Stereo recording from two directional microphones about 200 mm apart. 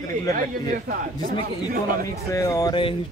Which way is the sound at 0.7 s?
45° right (ahead or behind).